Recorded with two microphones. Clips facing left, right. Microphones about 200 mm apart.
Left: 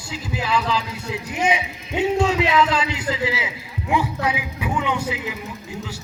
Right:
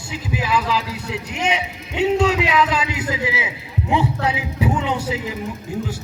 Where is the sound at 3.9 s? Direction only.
25° right (ahead or behind).